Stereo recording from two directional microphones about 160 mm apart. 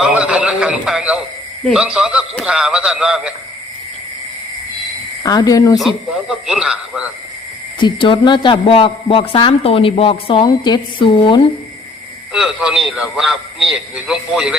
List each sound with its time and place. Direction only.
0.0 s a man's voice: 5° right (ahead or behind)
5.2 s speech: 25° left (ahead or behind)
5.8 s a man's voice: 5° right (ahead or behind)
7.8 s a man's voice: 30° left (ahead or behind)
12.3 s a man's voice: 5° right (ahead or behind)